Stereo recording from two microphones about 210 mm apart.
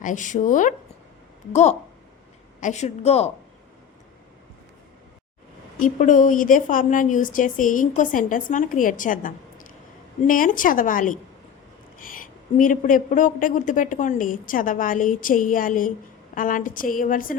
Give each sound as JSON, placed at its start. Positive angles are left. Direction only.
{"t": 0.0, "sound": "a woman's voice", "side_deg": 35}
{"t": 2.6, "sound": "a woman's voice", "side_deg": 35}
{"t": 5.8, "sound": "a woman's voice", "side_deg": 40}